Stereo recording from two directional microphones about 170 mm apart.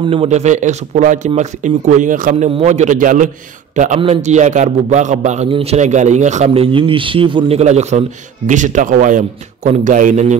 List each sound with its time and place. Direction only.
0.0 s a man's voice: 35° right (ahead or behind)